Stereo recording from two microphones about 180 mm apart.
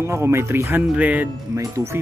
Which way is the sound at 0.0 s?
15° right (ahead or behind).